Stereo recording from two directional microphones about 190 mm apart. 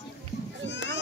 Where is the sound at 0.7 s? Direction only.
75° left (ahead or behind).